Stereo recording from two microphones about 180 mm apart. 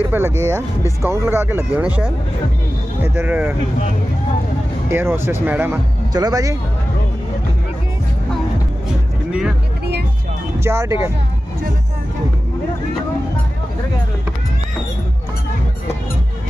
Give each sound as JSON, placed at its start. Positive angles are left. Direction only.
{"t": 0.0, "sound": "speech", "side_deg": -15}
{"t": 3.0, "sound": "speech", "side_deg": -10}
{"t": 4.8, "sound": "speech", "side_deg": -15}
{"t": 6.1, "sound": "speech", "side_deg": -20}
{"t": 10.6, "sound": "speech", "side_deg": -15}